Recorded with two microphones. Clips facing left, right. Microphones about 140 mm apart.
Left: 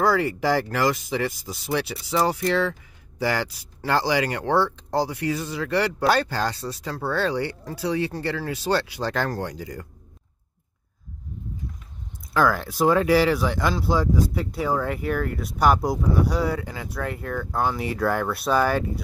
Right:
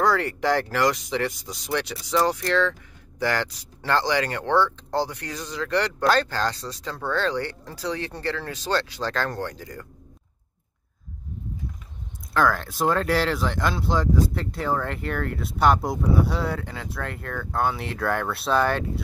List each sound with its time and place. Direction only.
0.0 s speech: 5° left (ahead or behind)
12.4 s speech: 5° left (ahead or behind)